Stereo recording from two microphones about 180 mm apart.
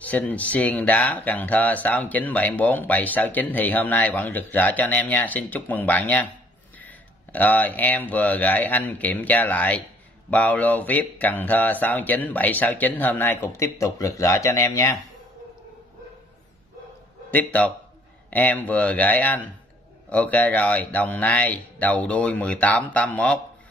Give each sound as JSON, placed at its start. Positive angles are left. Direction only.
{"t": 0.0, "sound": "speech", "side_deg": 10}
{"t": 17.3, "sound": "speech", "side_deg": 10}